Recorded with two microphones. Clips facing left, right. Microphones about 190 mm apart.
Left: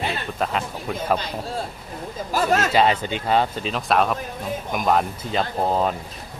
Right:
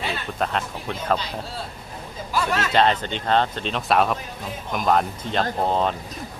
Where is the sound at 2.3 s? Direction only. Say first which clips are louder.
Left 4 dB; 45° left (ahead or behind).